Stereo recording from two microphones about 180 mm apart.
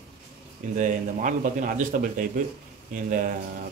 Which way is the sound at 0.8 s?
45° right (ahead or behind).